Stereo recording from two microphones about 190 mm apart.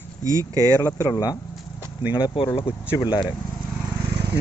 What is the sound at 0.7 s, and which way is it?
Speech, 15° left (ahead or behind).